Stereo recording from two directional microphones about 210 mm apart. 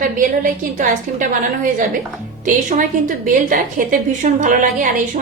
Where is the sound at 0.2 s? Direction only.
40° right (ahead or behind).